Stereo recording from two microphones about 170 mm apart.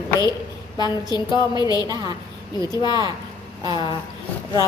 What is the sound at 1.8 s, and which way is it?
Speech, 25° right (ahead or behind).